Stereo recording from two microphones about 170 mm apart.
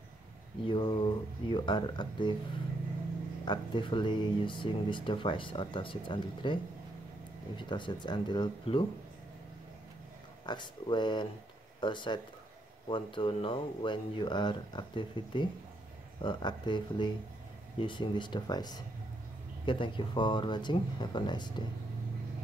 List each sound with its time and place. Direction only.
0.7 s speech: 30° left (ahead or behind)
3.4 s speech: 30° left (ahead or behind)
10.4 s speech: 25° left (ahead or behind)